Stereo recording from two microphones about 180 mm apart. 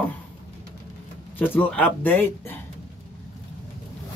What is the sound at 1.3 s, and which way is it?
A man's voice, 10° left (ahead or behind).